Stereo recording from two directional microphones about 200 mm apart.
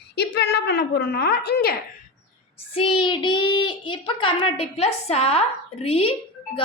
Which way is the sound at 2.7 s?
25° left (ahead or behind).